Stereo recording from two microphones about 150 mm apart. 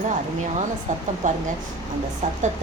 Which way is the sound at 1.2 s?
55° right (ahead or behind).